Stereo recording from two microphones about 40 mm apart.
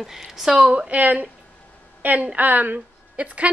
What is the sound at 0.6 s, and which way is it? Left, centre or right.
A woman's voice, right.